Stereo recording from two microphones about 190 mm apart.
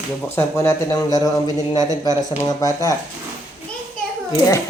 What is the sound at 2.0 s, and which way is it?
Speech, 15° left (ahead or behind).